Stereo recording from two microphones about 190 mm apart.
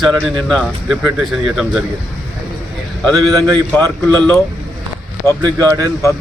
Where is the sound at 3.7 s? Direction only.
5° left (ahead or behind).